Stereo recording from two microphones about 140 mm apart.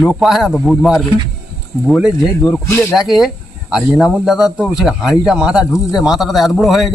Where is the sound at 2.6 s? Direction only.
20° left (ahead or behind).